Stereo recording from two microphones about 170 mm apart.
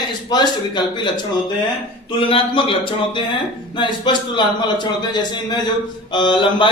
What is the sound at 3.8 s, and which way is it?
A man's voice, 30° left (ahead or behind).